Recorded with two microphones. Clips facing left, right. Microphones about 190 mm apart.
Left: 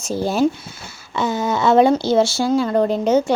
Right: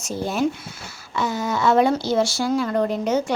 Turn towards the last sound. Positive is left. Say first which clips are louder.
# left 5 dB
turn(degrees=30)  # may be behind; listen again after turning